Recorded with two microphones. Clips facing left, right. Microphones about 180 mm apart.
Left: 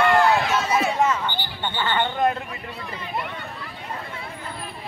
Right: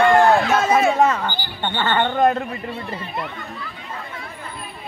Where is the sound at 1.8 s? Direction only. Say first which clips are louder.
Right 5 dB; 45° right (ahead or behind).